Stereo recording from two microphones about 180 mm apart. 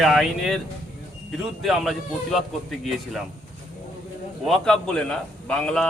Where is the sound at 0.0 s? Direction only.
Centre (ahead or behind).